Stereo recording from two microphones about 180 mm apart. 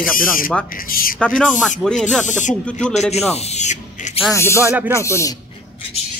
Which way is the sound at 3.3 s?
35° left (ahead or behind).